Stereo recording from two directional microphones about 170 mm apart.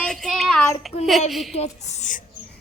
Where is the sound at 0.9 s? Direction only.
35° left (ahead or behind).